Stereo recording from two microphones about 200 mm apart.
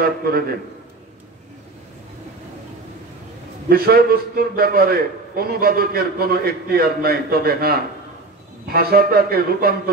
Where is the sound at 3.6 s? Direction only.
50° right (ahead or behind).